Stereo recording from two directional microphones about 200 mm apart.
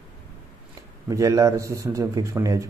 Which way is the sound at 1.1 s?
15° right (ahead or behind).